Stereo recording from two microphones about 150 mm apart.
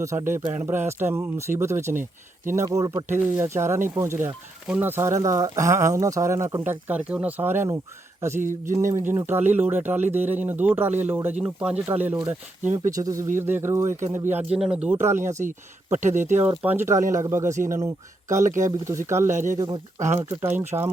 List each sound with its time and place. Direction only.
0.0 s speech: 20° right (ahead or behind)
8.4 s speech: 60° right (ahead or behind)
8.7 s speech: 20° right (ahead or behind)
14.3 s speech: 5° right (ahead or behind)
15.0 s speech: 15° right (ahead or behind)
15.4 s speech: 55° right (ahead or behind)
16.4 s speech: 15° right (ahead or behind)
19.5 s speech: 30° right (ahead or behind)
20.1 s speech: 15° right (ahead or behind)